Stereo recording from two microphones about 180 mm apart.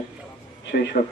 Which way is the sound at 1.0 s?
50° left (ahead or behind).